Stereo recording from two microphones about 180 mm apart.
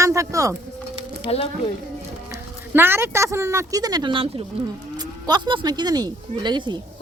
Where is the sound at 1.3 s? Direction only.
30° left (ahead or behind).